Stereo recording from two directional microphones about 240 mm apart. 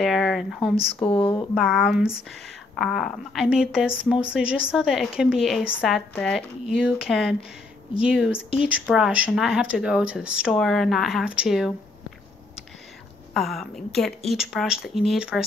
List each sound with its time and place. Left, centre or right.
0.0 s speech: centre
0.6 s speech: left
1.5 s speech: centre
13.3 s speech: centre